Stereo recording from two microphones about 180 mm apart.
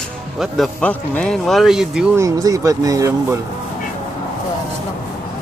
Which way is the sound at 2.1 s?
20° right (ahead or behind).